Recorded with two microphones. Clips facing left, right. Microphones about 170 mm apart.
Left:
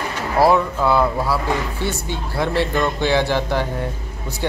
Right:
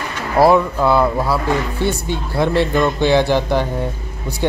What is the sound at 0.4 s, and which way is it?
Speech, 15° right (ahead or behind).